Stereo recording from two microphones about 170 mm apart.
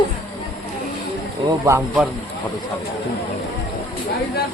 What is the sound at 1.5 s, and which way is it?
Speech, 20° right (ahead or behind).